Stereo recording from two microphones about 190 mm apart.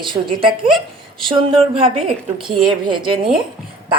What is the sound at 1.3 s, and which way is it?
Speech, 30° right (ahead or behind).